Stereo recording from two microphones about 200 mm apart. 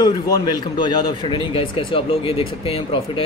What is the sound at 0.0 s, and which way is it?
A man's voice, 20° left (ahead or behind).